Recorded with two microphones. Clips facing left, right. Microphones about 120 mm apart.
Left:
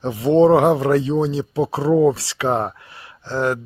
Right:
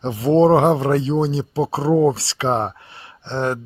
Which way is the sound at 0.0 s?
30° right (ahead or behind).